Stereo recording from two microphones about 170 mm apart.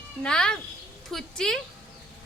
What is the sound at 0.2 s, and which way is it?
Speech, 5° left (ahead or behind).